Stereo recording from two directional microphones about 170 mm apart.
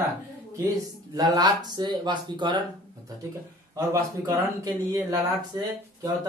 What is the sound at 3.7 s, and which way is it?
A man's voice, 20° right (ahead or behind).